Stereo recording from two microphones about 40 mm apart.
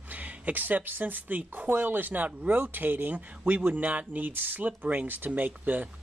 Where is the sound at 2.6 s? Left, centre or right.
Right.